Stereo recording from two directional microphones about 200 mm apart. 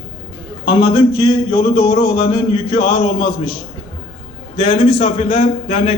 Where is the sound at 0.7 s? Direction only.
25° left (ahead or behind).